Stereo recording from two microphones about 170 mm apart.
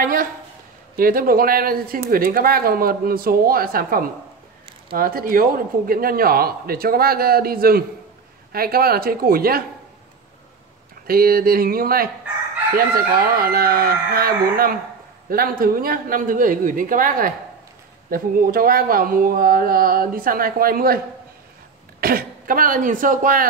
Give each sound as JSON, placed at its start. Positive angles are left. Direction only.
{"t": 0.0, "sound": "speech", "side_deg": -55}
{"t": 11.1, "sound": "speech", "side_deg": -60}
{"t": 22.0, "sound": "speech", "side_deg": -60}